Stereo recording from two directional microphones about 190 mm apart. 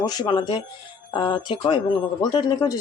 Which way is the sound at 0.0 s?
20° left (ahead or behind).